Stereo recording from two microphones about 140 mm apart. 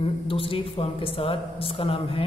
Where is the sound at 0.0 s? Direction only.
40° left (ahead or behind).